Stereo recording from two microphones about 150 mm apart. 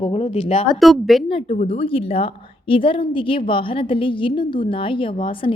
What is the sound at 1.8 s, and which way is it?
A woman's voice, 35° left (ahead or behind).